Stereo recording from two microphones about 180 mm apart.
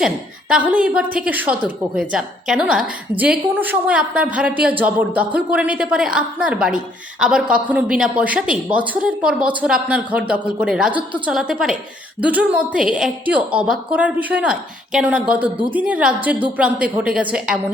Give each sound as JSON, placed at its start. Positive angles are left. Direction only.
{"t": 0.0, "sound": "a woman's voice", "side_deg": -5}